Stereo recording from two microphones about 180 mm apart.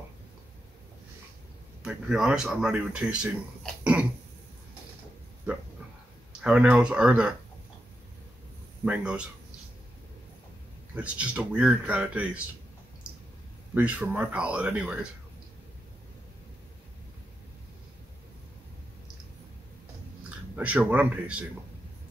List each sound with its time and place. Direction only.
1.8 s speech: 5° right (ahead or behind)
3.8 s cough: 10° right (ahead or behind)
6.4 s speech: 5° right (ahead or behind)
8.8 s speech: 5° right (ahead or behind)
11.0 s speech: 5° right (ahead or behind)
13.7 s speech: 10° right (ahead or behind)
20.5 s speech: 5° right (ahead or behind)